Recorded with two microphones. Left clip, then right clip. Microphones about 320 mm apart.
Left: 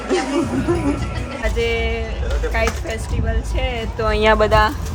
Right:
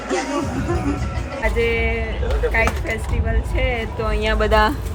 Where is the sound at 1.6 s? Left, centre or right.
Centre.